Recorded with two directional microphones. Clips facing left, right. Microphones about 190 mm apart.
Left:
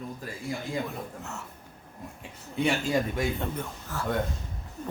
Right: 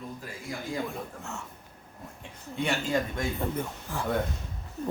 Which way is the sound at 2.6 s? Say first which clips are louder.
Left 2 dB; 10° left (ahead or behind).